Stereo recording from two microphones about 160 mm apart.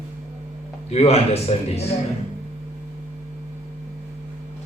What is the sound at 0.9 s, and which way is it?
Speech, 40° left (ahead or behind).